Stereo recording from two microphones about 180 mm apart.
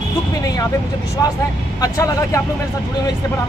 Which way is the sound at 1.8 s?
20° left (ahead or behind).